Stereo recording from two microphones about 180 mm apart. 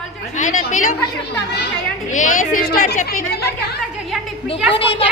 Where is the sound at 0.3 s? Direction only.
45° left (ahead or behind).